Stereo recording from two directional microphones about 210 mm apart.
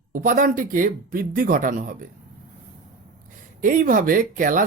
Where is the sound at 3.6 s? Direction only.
40° right (ahead or behind).